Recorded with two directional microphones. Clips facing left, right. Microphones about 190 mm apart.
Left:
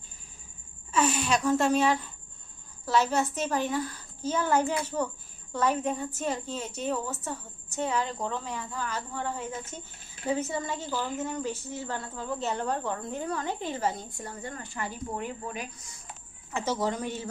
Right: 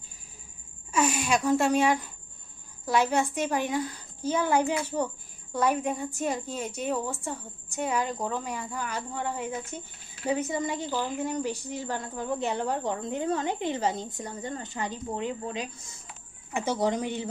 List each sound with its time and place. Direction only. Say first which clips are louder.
0.9 s a woman's voice: even; 10° right (ahead or behind)